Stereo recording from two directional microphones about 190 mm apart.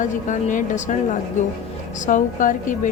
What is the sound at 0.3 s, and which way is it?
A woman's voice, 45° left (ahead or behind).